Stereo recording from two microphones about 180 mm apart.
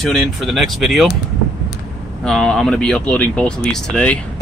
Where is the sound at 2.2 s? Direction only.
Centre (ahead or behind).